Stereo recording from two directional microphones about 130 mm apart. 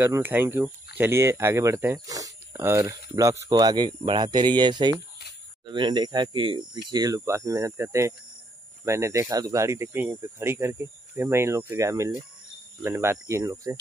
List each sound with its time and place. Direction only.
0.0 s speech: 15° right (ahead or behind)